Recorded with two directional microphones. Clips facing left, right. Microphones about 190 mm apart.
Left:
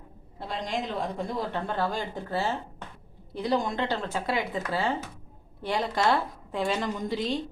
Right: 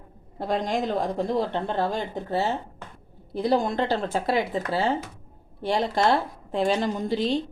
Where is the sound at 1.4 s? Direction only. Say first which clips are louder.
Right 4 dB; 25° right (ahead or behind).